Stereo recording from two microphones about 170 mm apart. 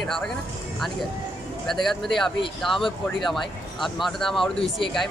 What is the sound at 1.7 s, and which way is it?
Speech, centre (ahead or behind).